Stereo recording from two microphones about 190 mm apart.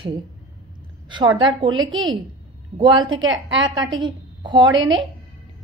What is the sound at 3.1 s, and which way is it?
Speech, 90° right.